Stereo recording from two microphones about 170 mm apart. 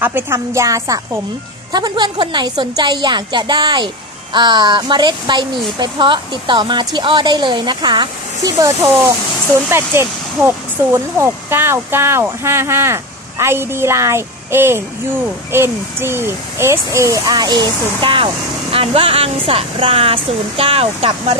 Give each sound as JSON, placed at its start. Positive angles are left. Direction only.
{"t": 0.0, "sound": "a woman's voice", "side_deg": -15}